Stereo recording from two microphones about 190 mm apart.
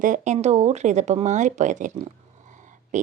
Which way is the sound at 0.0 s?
40° right (ahead or behind).